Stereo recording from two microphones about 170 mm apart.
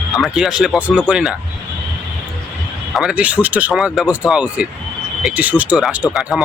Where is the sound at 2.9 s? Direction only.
5° right (ahead or behind).